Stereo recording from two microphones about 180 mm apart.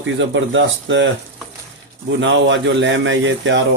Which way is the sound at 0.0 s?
90° right.